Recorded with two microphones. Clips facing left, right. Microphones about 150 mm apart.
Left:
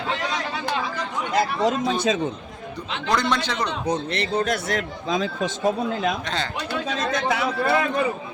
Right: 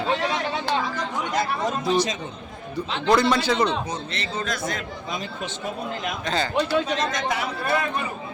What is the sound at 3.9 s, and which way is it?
Speech, 65° left (ahead or behind).